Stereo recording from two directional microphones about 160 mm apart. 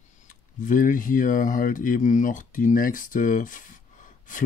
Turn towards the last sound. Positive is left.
turn(degrees=55)  # may be behind; listen again after turning